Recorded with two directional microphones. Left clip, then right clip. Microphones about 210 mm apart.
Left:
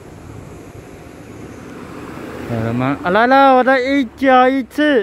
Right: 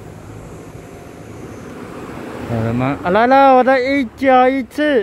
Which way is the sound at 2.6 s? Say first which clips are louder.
Even; 10° left (ahead or behind).